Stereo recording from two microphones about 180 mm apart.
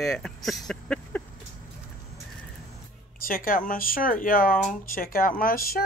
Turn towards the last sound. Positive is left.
turn(degrees=55)  # may be behind; listen again after turning